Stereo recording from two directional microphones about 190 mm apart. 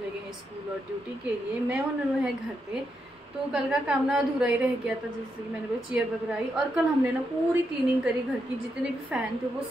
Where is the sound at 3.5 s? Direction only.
5° right (ahead or behind).